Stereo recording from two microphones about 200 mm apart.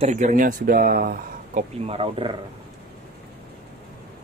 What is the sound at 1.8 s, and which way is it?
Speech, 30° right (ahead or behind).